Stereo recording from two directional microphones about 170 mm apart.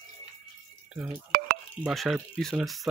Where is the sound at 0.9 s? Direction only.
5° right (ahead or behind).